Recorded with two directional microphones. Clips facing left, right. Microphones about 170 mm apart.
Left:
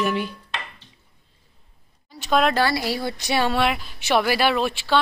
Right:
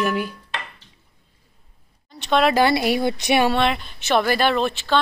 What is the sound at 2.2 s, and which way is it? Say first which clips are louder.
Speech: right 2 dB; centre (ahead or behind).